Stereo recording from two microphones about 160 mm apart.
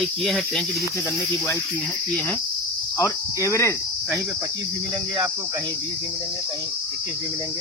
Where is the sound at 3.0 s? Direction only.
20° left (ahead or behind).